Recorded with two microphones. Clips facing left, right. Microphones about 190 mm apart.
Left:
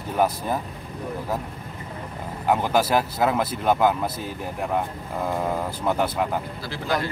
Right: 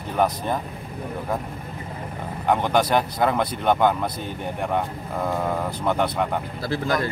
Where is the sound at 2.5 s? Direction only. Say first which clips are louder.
Right 1 dB; 5° left (ahead or behind).